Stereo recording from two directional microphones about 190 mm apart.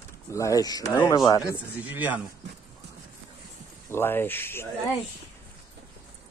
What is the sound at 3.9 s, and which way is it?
Speech, 10° left (ahead or behind).